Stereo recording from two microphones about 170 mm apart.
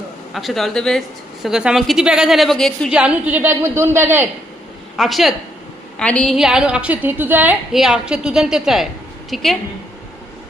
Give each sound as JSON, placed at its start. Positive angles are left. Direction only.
{"t": 0.3, "sound": "a woman's voice", "side_deg": 0}
{"t": 2.9, "sound": "a woman's voice", "side_deg": -10}
{"t": 4.9, "sound": "a woman's voice", "side_deg": 0}